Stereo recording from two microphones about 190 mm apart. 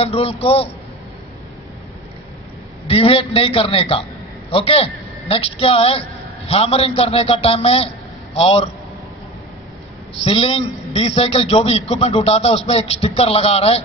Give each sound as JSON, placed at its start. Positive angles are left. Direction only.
{"t": 0.0, "sound": "a man's voice", "side_deg": 30}
{"t": 2.9, "sound": "a man's voice", "side_deg": 30}
{"t": 10.2, "sound": "a man's voice", "side_deg": 30}